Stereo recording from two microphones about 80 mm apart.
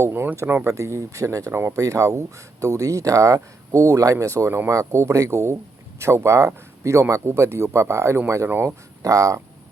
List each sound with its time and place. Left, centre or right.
0.0 s speech: right
9.0 s speech: right